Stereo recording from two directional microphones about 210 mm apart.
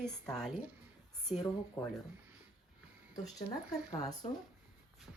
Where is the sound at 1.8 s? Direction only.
15° left (ahead or behind).